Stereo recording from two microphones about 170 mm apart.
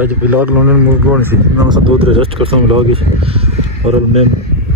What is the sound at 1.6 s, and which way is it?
Speech, 30° right (ahead or behind).